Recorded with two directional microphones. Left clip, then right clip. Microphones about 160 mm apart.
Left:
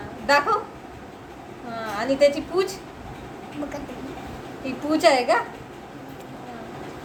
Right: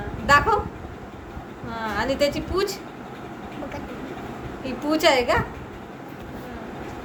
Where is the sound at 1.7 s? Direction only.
30° right (ahead or behind).